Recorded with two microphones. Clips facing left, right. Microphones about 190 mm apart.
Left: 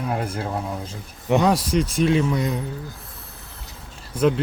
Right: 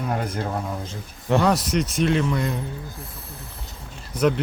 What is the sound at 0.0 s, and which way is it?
Speech, 5° left (ahead or behind).